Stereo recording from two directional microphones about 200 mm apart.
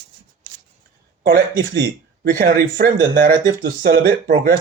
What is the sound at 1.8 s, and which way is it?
Speech, 50° right (ahead or behind).